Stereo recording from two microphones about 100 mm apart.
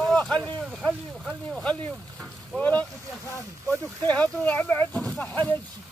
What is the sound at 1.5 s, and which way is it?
Speech, 10° left (ahead or behind).